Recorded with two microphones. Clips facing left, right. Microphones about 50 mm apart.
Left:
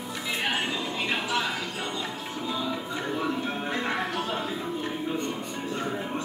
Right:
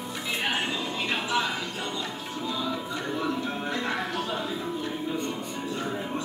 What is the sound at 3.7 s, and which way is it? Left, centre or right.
Music, left.